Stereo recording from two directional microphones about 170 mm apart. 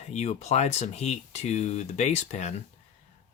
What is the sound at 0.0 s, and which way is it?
Speech, 40° left (ahead or behind).